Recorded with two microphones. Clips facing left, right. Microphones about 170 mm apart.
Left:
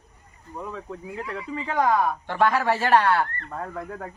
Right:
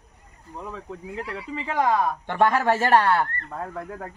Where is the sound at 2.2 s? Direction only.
50° right (ahead or behind).